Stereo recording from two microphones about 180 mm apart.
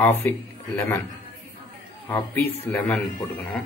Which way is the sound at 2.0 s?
10° left (ahead or behind).